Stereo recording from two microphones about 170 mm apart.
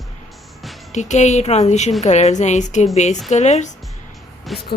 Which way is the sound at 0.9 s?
45° left (ahead or behind).